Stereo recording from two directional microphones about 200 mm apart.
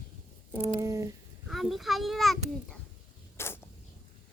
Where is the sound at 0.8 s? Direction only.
15° right (ahead or behind).